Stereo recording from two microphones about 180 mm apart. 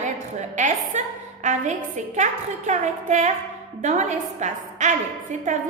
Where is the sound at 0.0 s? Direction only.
40° right (ahead or behind).